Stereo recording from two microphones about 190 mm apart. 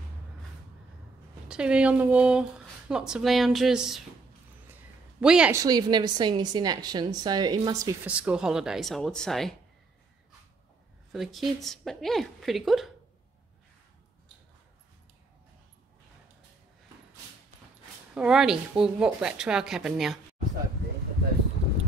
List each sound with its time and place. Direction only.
1.5 s speech: 5° right (ahead or behind)
5.2 s speech: 5° right (ahead or behind)
5.5 s a woman's voice: 20° right (ahead or behind)
8.0 s speech: 5° right (ahead or behind)
11.1 s speech: centre (ahead or behind)
18.1 s speech: 5° right (ahead or behind)